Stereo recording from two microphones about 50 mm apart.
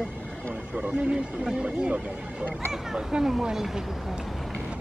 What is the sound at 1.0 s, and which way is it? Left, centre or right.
Speech, centre.